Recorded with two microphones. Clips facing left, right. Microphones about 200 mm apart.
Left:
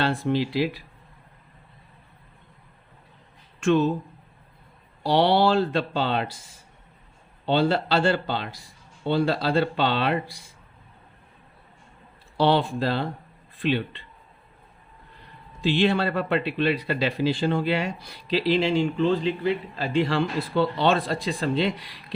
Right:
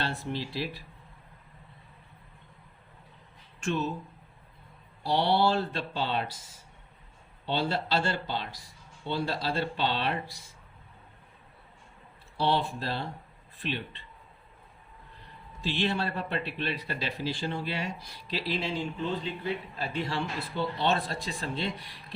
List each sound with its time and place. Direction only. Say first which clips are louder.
0.0 s speech: left 10 dB; 90° left
3.6 s speech: left 10 dB; 90° left
5.0 s speech: left 6 dB; 90° left; by 6.2 s 70° left (ahead or behind)
7.4 s speech: left 8 dB; 65° left (ahead or behind)
12.4 s speech: left 7 dB; 90° left
13.6 s speech: left 10 dB; 75° left (ahead or behind)
15.6 s speech: left 8 dB; 90° left